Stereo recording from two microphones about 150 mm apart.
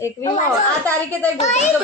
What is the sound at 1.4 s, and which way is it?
Speech, 50° left (ahead or behind).